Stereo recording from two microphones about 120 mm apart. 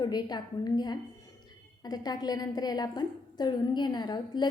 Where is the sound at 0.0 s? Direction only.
35° left (ahead or behind).